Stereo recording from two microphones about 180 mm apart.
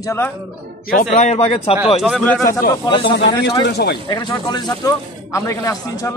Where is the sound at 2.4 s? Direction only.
20° left (ahead or behind).